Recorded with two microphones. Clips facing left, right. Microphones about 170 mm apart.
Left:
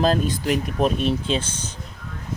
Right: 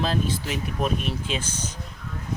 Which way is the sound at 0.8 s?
30° left (ahead or behind).